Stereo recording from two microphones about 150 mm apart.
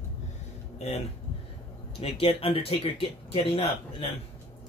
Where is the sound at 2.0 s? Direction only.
40° left (ahead or behind).